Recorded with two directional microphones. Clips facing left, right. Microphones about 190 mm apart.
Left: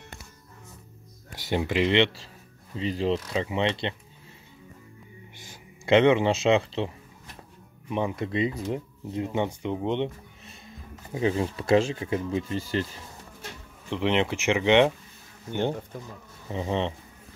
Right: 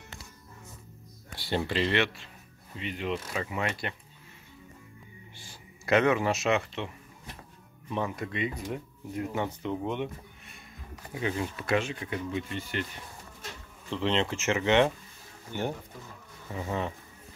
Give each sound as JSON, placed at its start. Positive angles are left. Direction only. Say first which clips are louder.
{"t": 1.5, "sound": "speech", "louder": "left 4 dB", "side_deg": 15}
{"t": 2.7, "sound": "speech", "louder": "left 7 dB", "side_deg": 35}
{"t": 3.3, "sound": "speech", "louder": "left 6 dB", "side_deg": 20}
{"t": 5.4, "sound": "speech", "louder": "left 4 dB", "side_deg": 20}
{"t": 8.2, "sound": "speech", "louder": "left 6 dB", "side_deg": 30}
{"t": 13.8, "sound": "speech", "louder": "left 3 dB", "side_deg": 15}
{"t": 16.4, "sound": "speech", "louder": "left 5 dB", "side_deg": 25}